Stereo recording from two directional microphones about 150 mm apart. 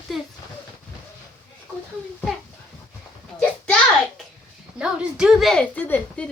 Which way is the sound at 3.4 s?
5° left (ahead or behind).